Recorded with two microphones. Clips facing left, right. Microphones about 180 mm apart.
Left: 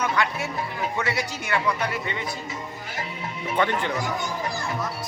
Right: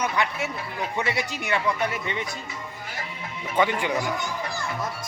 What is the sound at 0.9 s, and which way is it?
Speech, 20° right (ahead or behind).